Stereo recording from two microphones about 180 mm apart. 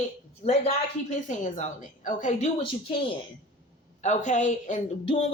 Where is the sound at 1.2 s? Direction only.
45° left (ahead or behind).